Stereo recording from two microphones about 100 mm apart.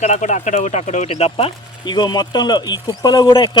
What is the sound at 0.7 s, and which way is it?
Speech, 90° left.